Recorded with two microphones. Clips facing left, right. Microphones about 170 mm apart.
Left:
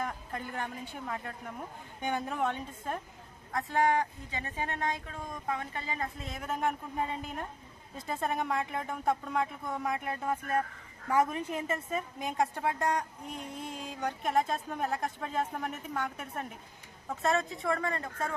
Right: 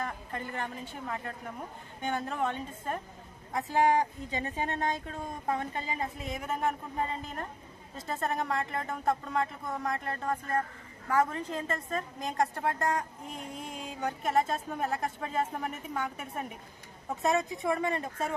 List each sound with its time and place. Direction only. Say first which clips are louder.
0.0 s a woman's voice: even; centre (ahead or behind)
3.5 s speech: right 2 dB; 10° right (ahead or behind)
4.6 s speech: even; 25° right (ahead or behind)
5.0 s speech: right 3 dB; 35° right (ahead or behind)
6.2 s a woman's voice: right 1 dB; centre (ahead or behind)
17.2 s speech: right 1 dB; 15° right (ahead or behind)